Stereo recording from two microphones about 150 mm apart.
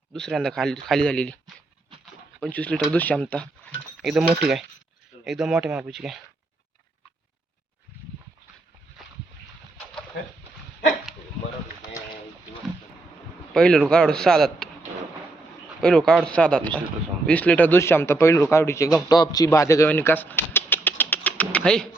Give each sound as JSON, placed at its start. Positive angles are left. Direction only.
{"t": 0.1, "sound": "a man's voice", "side_deg": 0}
{"t": 2.4, "sound": "a man's voice", "side_deg": 10}
{"t": 4.0, "sound": "speech", "side_deg": -5}
{"t": 13.5, "sound": "speech", "side_deg": 5}
{"t": 15.8, "sound": "a man's voice", "side_deg": 5}